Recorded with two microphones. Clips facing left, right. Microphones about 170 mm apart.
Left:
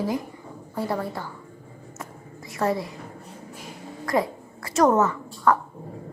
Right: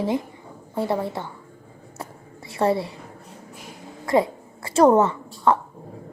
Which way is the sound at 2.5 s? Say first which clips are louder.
Right 3 dB; 30° right (ahead or behind).